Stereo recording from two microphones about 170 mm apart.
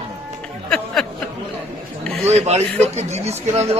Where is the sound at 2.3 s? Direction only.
40° right (ahead or behind).